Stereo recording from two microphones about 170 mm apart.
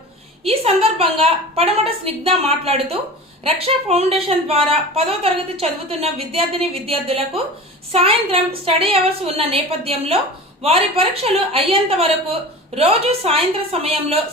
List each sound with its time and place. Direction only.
0.4 s speech: 35° right (ahead or behind)